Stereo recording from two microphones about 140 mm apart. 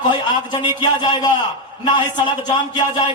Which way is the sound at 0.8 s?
30° left (ahead or behind).